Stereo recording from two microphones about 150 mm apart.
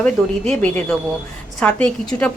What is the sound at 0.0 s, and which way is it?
A woman's voice, 5° left (ahead or behind).